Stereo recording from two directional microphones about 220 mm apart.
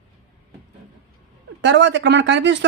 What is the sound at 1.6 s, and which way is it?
Speech, 55° right (ahead or behind).